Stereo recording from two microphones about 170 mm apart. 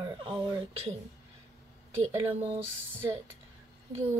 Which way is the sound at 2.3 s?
35° right (ahead or behind).